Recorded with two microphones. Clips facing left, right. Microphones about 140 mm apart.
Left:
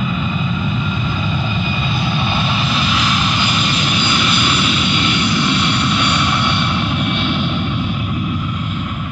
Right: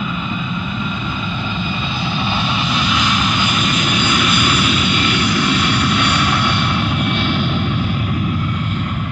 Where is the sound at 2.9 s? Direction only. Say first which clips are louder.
Even; centre (ahead or behind).